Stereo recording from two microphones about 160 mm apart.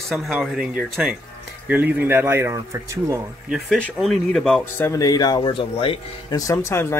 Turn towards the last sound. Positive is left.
turn(degrees=20)  # may be behind; listen again after turning